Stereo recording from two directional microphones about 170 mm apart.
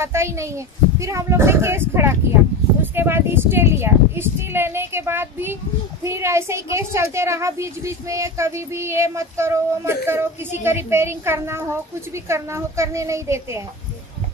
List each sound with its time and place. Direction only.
0.0 s a woman's voice: 15° right (ahead or behind)